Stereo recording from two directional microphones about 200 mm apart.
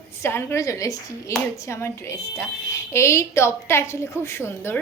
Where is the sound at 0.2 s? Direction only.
10° left (ahead or behind).